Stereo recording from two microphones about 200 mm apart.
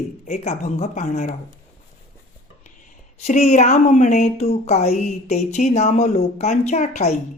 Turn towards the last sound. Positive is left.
turn(degrees=35)  # may be behind; listen again after turning